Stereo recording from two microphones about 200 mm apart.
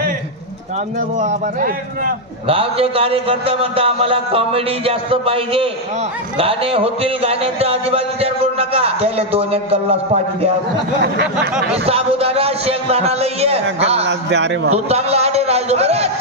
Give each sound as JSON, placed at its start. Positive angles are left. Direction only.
{"t": 1.2, "sound": "a man's voice", "side_deg": -45}
{"t": 2.4, "sound": "speech", "side_deg": -30}
{"t": 11.7, "sound": "a man's voice", "side_deg": -30}
{"t": 14.0, "sound": "a man's voice", "side_deg": -60}
{"t": 14.7, "sound": "a man's voice", "side_deg": -30}